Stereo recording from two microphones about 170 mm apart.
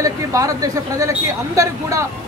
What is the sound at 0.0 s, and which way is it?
Speech, 20° right (ahead or behind).